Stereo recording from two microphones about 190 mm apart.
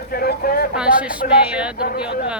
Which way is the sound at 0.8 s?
5° right (ahead or behind).